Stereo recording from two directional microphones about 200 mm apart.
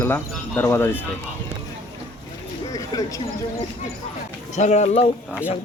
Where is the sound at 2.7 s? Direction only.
20° left (ahead or behind).